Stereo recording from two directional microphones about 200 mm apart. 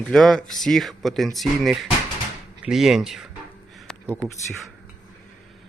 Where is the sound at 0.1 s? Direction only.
Centre (ahead or behind).